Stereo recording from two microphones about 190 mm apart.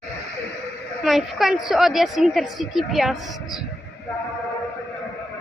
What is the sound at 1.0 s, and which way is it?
A woman's voice, centre (ahead or behind).